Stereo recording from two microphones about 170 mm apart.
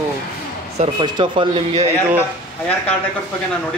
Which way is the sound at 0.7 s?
25° right (ahead or behind).